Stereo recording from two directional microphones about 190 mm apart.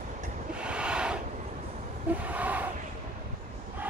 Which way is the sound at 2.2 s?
10° right (ahead or behind).